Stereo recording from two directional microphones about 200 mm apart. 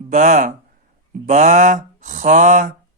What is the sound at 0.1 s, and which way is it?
Speech, 40° right (ahead or behind).